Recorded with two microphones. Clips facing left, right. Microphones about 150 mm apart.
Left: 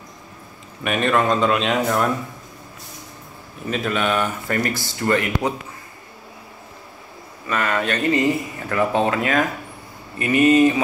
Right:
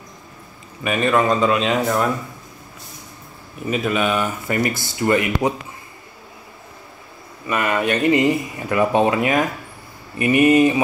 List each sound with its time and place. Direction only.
0.8 s speech: centre (ahead or behind)
3.7 s speech: 5° right (ahead or behind)
7.4 s speech: 15° right (ahead or behind)